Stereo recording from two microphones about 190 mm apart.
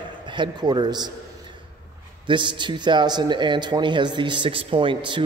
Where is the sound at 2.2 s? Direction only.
25° right (ahead or behind).